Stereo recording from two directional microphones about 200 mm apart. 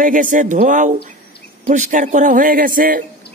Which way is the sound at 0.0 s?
40° right (ahead or behind).